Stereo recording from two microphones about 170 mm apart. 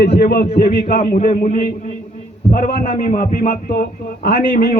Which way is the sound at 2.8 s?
50° left (ahead or behind).